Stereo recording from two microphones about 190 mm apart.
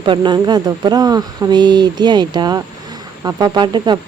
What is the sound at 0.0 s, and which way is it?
A woman's voice, 25° right (ahead or behind).